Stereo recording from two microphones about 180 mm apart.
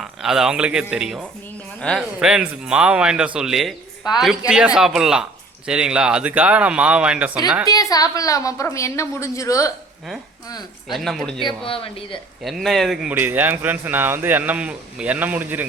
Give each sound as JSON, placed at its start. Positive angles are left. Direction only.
{"t": 0.0, "sound": "a man's voice", "side_deg": 0}
{"t": 7.7, "sound": "a woman's voice", "side_deg": 20}
{"t": 10.9, "sound": "a man's voice", "side_deg": 0}
{"t": 11.4, "sound": "speech", "side_deg": 30}
{"t": 12.4, "sound": "speech", "side_deg": 0}